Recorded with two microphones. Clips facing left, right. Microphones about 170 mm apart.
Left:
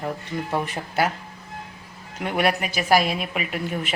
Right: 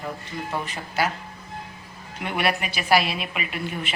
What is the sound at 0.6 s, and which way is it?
Speech, 55° left (ahead or behind).